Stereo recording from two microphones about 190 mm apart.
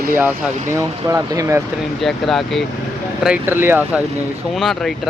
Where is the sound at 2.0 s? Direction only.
Centre (ahead or behind).